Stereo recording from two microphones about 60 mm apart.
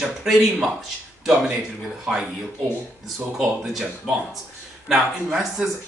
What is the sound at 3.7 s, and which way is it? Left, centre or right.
Speech, centre.